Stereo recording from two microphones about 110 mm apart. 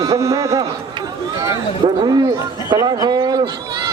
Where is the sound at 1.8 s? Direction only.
55° right (ahead or behind).